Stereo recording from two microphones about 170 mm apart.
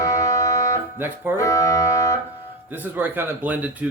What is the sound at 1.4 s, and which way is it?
Music, 20° left (ahead or behind).